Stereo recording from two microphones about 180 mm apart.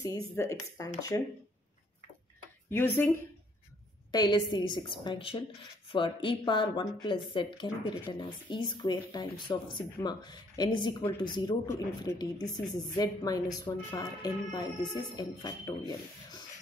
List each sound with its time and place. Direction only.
0.0 s speech: 15° left (ahead or behind)
2.7 s speech: 10° left (ahead or behind)
4.1 s a woman's voice: 25° left (ahead or behind)
11.6 s a woman's voice: 15° left (ahead or behind)
15.9 s a sound: 25° left (ahead or behind)